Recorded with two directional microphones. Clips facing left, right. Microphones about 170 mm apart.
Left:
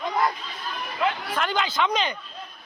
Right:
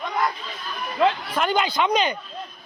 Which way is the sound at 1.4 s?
15° right (ahead or behind).